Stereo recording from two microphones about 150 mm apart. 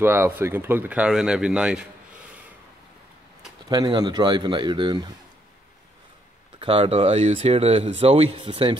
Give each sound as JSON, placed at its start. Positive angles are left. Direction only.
{"t": 0.0, "sound": "speech", "side_deg": -15}
{"t": 3.6, "sound": "a man's voice", "side_deg": -25}
{"t": 6.6, "sound": "speech", "side_deg": -35}